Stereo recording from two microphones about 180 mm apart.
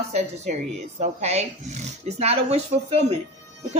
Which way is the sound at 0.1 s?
40° right (ahead or behind).